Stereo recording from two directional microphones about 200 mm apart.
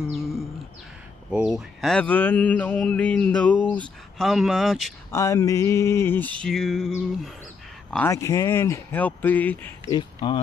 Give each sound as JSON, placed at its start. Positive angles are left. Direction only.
{"t": 0.1, "sound": "a sound", "side_deg": 0}
{"t": 1.3, "sound": "mantra", "side_deg": -5}
{"t": 4.2, "sound": "speech", "side_deg": 0}
{"t": 5.1, "sound": "mantra", "side_deg": 15}
{"t": 7.9, "sound": "mantra", "side_deg": 10}
{"t": 9.9, "sound": "speech", "side_deg": 25}